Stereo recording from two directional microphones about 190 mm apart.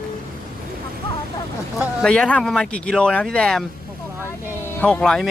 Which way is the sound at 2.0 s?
5° left (ahead or behind).